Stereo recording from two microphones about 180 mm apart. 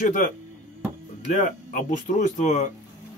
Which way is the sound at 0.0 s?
50° left (ahead or behind).